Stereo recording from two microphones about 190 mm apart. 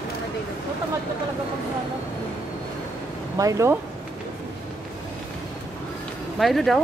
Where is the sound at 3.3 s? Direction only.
15° right (ahead or behind).